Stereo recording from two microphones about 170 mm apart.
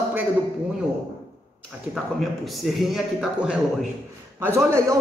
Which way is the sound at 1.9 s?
Centre (ahead or behind).